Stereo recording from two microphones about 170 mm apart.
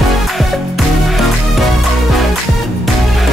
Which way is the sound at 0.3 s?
Centre (ahead or behind).